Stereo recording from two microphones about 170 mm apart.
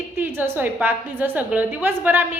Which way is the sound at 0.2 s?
10° right (ahead or behind).